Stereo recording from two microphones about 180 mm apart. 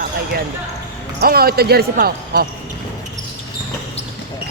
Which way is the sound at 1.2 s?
60° right (ahead or behind).